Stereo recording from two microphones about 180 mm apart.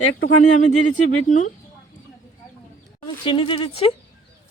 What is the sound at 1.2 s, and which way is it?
Speech, 45° left (ahead or behind).